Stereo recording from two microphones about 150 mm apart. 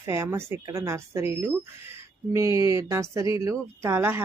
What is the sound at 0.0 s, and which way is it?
A woman's voice, 20° right (ahead or behind).